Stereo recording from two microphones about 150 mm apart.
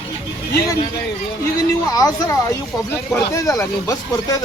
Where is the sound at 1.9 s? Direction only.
25° left (ahead or behind).